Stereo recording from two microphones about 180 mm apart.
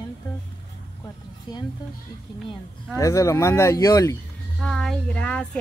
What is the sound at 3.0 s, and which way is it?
Speech, 15° left (ahead or behind).